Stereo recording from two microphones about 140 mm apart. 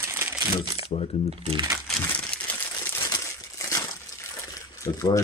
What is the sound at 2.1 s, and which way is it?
Crumpling, 10° left (ahead or behind).